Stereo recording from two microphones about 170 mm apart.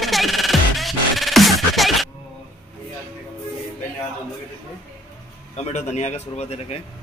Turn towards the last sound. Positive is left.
turn(degrees=40)  # may be behind; listen again after turning